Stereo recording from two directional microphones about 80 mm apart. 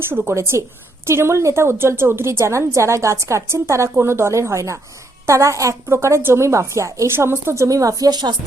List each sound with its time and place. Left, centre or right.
0.3 s a woman's voice: right